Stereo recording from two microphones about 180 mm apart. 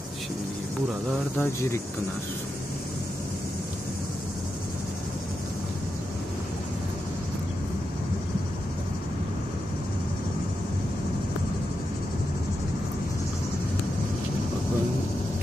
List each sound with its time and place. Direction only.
1.4 s speech: 15° left (ahead or behind)